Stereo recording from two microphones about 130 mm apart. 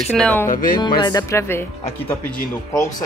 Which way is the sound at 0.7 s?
35° left (ahead or behind).